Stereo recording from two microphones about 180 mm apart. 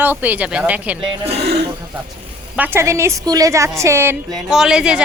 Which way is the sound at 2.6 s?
10° right (ahead or behind).